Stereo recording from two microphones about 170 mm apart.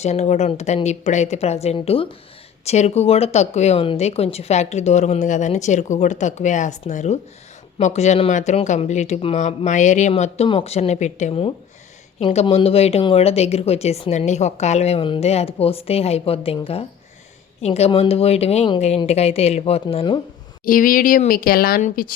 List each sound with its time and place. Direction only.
0.0 s speech: 40° left (ahead or behind)
17.6 s speech: 40° left (ahead or behind)
20.7 s speech: 55° left (ahead or behind)
21.8 s speech: 45° left (ahead or behind)